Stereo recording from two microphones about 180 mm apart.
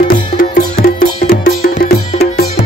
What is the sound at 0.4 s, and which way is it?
Music, 55° left (ahead or behind).